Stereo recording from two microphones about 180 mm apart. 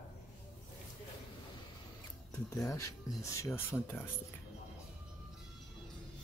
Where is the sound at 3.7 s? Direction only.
5° left (ahead or behind).